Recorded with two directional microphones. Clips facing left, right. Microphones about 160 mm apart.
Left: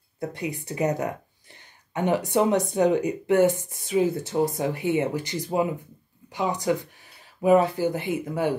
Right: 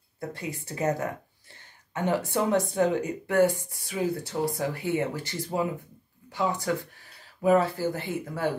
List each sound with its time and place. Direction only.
0.3 s speech: 15° left (ahead or behind)